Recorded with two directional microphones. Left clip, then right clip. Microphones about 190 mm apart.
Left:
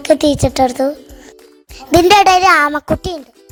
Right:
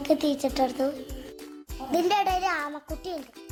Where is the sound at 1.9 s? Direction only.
50° left (ahead or behind).